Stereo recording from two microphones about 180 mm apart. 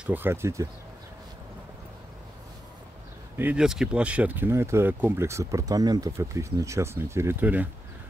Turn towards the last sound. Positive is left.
turn(degrees=-10)  # may be behind; listen again after turning